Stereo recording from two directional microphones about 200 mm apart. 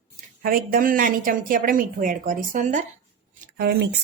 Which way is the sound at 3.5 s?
55° right (ahead or behind).